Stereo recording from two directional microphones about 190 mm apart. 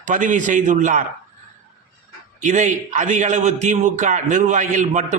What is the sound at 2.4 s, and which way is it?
A man's voice, 40° right (ahead or behind).